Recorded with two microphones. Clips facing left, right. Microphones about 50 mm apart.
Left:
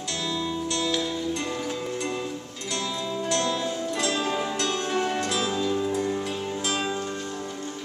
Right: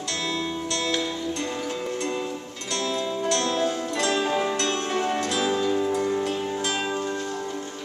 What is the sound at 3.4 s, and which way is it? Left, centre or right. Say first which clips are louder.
Music: right 3 dB; right.